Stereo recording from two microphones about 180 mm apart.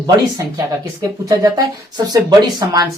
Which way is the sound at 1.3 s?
20° right (ahead or behind).